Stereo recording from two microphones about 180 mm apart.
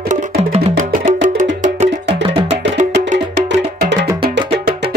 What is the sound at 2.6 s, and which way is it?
Music, 40° right (ahead or behind).